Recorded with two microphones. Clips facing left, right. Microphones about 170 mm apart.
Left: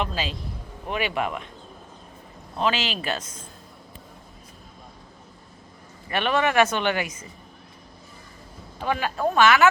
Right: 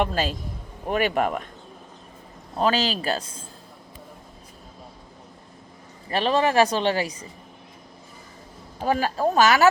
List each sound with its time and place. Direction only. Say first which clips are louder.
0.0 s speech: right 4 dB; 50° right (ahead or behind)
2.6 s a man's voice: right 3 dB; 40° right (ahead or behind)
6.1 s a man's voice: right 2 dB; 30° right (ahead or behind)
8.8 s a man's voice: right 2 dB; 35° right (ahead or behind)